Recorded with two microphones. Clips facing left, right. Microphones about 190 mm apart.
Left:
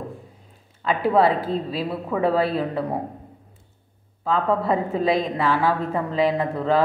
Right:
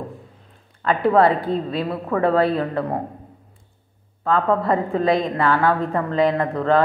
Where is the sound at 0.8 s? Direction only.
5° left (ahead or behind).